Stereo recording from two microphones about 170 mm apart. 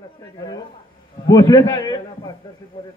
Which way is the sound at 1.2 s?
25° left (ahead or behind).